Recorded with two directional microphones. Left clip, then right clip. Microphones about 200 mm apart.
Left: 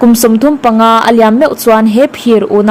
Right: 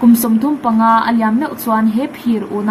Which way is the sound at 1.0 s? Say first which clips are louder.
Left 9 dB; 45° left (ahead or behind).